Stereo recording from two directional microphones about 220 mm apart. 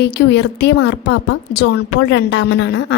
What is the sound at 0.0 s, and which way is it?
A woman's voice, 50° left (ahead or behind).